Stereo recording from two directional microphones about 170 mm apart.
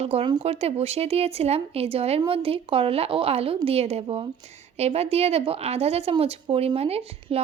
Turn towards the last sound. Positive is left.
turn(degrees=-35)  # may be behind; listen again after turning